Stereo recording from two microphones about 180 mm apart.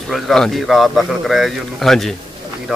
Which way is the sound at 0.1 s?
Centre (ahead or behind).